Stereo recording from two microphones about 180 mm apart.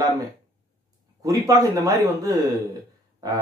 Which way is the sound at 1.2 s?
20° right (ahead or behind).